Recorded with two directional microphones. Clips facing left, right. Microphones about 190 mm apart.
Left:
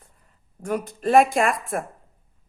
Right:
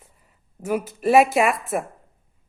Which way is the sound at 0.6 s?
5° right (ahead or behind).